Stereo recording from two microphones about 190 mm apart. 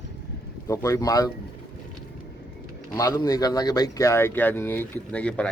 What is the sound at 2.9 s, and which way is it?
A man's voice, 20° left (ahead or behind).